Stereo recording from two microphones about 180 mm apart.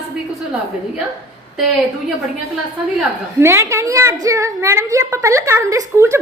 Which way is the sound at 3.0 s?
15° right (ahead or behind).